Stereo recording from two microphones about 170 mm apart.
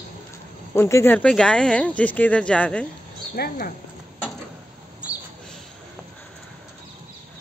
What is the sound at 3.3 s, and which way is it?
Speech, 65° left (ahead or behind).